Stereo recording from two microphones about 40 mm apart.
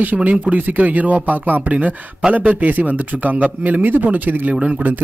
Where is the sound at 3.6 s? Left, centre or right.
Right.